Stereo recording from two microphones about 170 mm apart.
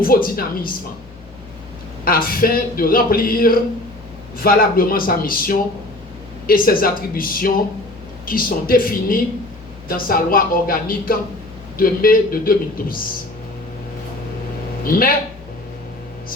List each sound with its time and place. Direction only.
0.0 s speech: 60° left (ahead or behind)
2.0 s speech: 60° left (ahead or behind)
14.8 s speech: 60° left (ahead or behind)